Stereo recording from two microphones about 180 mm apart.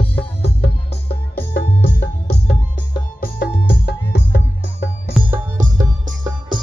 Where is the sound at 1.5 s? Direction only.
60° left (ahead or behind).